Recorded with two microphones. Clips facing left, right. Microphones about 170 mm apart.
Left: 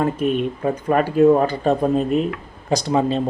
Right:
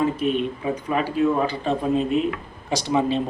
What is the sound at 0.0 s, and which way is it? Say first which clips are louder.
Speech: left 2 dB; 50° left (ahead or behind).